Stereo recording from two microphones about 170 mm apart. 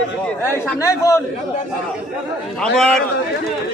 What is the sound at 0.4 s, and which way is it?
Speech, 15° left (ahead or behind).